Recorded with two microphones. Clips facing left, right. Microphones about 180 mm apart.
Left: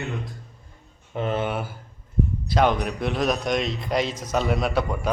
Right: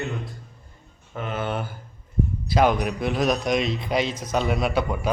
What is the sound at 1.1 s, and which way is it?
Speech, 30° left (ahead or behind).